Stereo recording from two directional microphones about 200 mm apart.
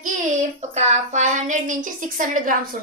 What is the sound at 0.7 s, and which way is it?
A woman's voice, 35° right (ahead or behind).